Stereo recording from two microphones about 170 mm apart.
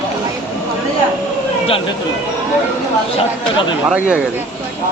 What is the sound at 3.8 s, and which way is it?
Speech, 5° right (ahead or behind).